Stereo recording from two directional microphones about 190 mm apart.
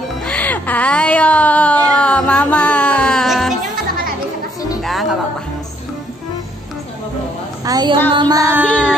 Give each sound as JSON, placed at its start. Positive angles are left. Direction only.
{"t": 0.2, "sound": "speech", "side_deg": 5}
{"t": 2.0, "sound": "music", "side_deg": 5}
{"t": 4.8, "sound": "music", "side_deg": 0}
{"t": 7.6, "sound": "music", "side_deg": -20}